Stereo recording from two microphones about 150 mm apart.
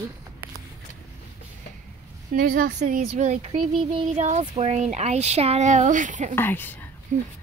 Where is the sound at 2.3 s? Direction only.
70° right (ahead or behind).